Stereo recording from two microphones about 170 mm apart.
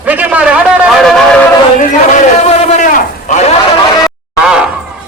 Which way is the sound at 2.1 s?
45° left (ahead or behind).